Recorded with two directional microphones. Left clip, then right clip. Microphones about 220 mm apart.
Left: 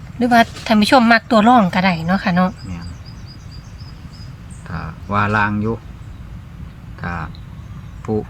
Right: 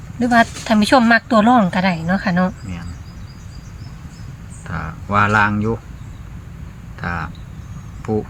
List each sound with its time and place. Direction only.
0.2 s speech: 25° left (ahead or behind)
4.7 s speech: 5° right (ahead or behind)
7.0 s speech: centre (ahead or behind)